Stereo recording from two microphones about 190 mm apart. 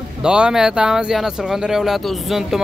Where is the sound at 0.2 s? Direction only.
5° right (ahead or behind).